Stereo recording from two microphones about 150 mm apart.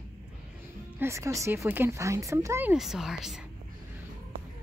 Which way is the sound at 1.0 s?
20° right (ahead or behind).